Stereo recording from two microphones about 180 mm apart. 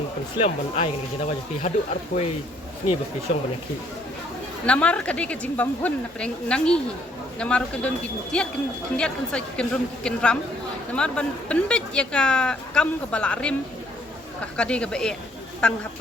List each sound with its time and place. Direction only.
0.3 s speech: 35° left (ahead or behind)
4.6 s speech: 5° left (ahead or behind)
14.5 s speech: 5° left (ahead or behind)